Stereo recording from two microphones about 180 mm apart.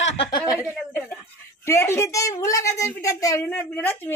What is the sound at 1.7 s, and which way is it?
Speech, 15° left (ahead or behind).